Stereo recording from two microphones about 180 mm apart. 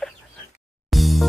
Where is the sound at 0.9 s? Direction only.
Centre (ahead or behind).